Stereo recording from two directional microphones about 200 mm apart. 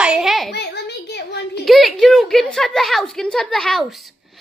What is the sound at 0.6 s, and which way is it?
A child's voice, 55° left (ahead or behind).